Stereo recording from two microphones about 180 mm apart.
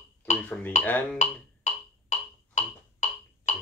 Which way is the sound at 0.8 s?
10° left (ahead or behind).